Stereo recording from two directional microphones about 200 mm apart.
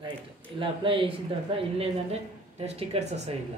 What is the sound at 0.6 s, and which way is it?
Speech, 25° right (ahead or behind).